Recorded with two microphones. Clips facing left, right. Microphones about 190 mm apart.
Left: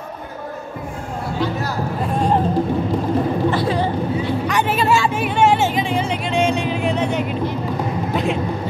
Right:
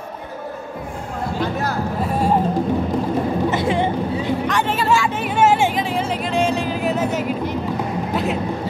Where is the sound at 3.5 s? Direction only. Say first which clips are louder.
Even; 20° right (ahead or behind).